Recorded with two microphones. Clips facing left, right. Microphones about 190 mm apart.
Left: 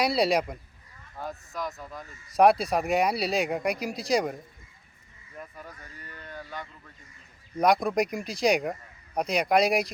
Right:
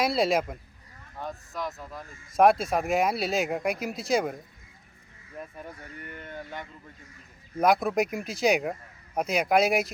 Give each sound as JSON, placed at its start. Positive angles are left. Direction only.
{"t": 0.0, "sound": "speech", "side_deg": 0}
{"t": 5.4, "sound": "speech", "side_deg": -25}
{"t": 7.6, "sound": "speech", "side_deg": -5}